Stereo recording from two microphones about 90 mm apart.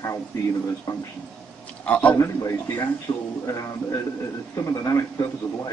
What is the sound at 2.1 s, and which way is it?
Speech, 35° left (ahead or behind).